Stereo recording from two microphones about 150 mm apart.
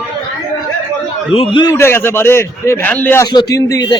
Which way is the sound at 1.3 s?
35° left (ahead or behind).